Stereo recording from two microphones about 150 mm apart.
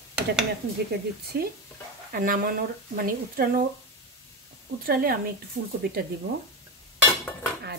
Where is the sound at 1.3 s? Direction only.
90° right.